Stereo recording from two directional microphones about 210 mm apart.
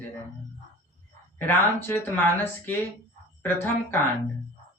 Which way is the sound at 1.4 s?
10° left (ahead or behind).